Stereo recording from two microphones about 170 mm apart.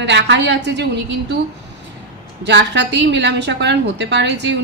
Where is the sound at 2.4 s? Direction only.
90° right.